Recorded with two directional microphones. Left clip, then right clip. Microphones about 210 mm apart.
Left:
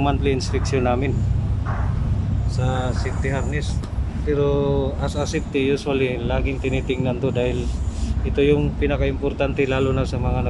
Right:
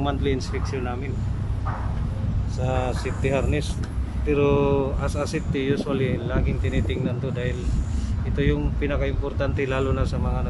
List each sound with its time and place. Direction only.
0.0 s speech: 5° left (ahead or behind)
0.7 s speech: 20° left (ahead or behind)
2.6 s speech: 5° right (ahead or behind)